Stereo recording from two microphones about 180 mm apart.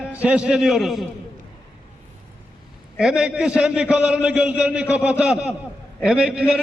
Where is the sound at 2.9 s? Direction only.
5° right (ahead or behind).